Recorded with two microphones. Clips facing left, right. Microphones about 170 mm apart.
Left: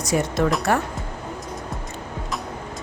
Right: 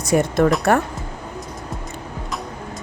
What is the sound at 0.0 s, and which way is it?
Speech, 55° right (ahead or behind).